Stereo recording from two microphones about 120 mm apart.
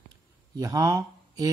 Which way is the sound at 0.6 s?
30° right (ahead or behind).